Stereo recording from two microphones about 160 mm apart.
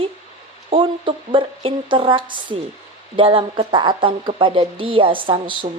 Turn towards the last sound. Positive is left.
turn(degrees=-30)  # may be behind; listen again after turning